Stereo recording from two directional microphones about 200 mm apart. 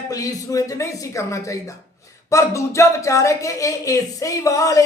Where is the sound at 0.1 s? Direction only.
15° left (ahead or behind).